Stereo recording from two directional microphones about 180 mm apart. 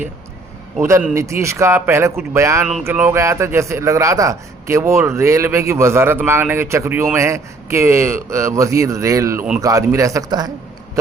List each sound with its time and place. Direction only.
0.8 s a man's voice: 15° right (ahead or behind)